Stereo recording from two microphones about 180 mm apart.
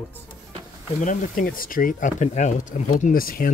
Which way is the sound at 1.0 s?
45° left (ahead or behind).